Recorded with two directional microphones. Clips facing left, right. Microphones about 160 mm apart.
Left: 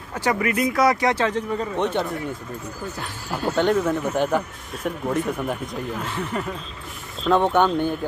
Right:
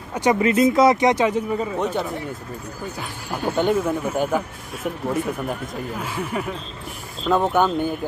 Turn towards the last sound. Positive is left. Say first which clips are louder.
# even
turn(degrees=-5)  # may be behind; listen again after turning